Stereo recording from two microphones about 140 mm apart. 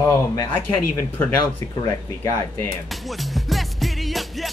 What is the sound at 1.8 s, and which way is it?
Speech, 25° left (ahead or behind).